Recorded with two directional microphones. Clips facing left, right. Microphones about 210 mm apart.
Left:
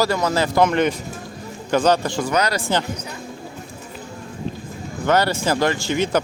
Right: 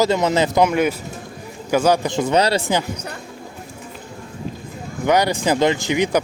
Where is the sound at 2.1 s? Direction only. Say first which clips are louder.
Right 4 dB; 25° right (ahead or behind).